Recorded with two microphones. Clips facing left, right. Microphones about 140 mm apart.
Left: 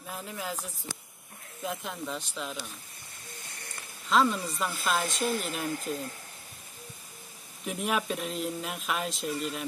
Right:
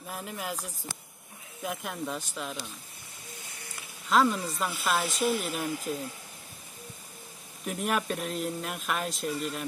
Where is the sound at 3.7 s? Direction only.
5° right (ahead or behind).